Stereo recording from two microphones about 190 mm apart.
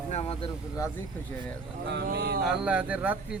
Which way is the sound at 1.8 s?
60° right (ahead or behind).